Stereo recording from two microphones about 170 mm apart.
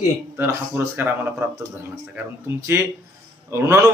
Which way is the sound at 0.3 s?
15° right (ahead or behind).